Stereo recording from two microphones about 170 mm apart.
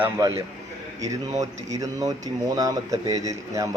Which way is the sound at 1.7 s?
20° right (ahead or behind).